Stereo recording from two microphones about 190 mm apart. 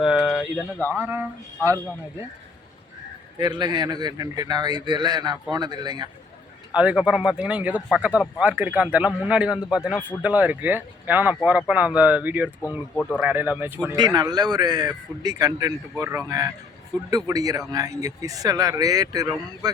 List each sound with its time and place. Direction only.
0.0 s a sound: centre (ahead or behind)
0.9 s speech: 10° right (ahead or behind)
3.3 s a man's voice: 20° right (ahead or behind)
6.7 s a man's voice: 5° right (ahead or behind)
13.9 s a man's voice: 20° right (ahead or behind)